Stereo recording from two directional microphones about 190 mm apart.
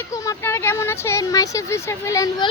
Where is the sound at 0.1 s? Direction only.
15° left (ahead or behind).